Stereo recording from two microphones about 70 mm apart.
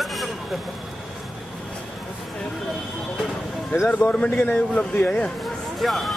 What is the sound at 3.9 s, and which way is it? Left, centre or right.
A man's voice, centre.